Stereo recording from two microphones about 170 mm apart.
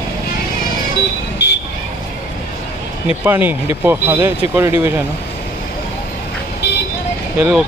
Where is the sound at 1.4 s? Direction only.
80° left.